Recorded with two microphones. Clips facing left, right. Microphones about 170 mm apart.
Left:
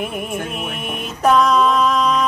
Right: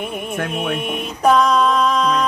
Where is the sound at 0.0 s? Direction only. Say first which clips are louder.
Left 1 dB; centre (ahead or behind).